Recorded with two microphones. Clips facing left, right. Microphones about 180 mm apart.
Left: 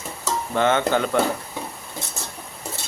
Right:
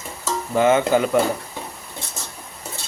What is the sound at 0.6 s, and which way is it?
Speech, 10° right (ahead or behind).